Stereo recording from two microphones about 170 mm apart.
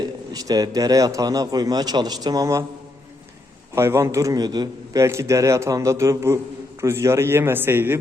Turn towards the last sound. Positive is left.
turn(degrees=-15)  # may be behind; listen again after turning